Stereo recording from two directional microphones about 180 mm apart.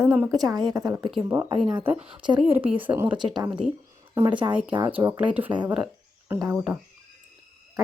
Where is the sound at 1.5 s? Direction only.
25° right (ahead or behind).